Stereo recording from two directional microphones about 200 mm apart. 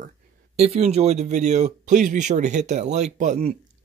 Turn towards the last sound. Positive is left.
turn(degrees=-35)  # may be behind; listen again after turning